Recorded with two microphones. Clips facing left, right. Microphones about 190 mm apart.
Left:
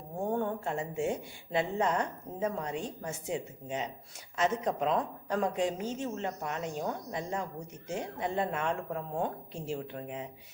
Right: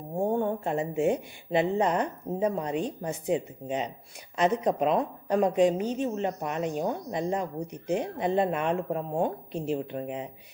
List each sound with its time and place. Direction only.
0.6 s speech: 20° right (ahead or behind)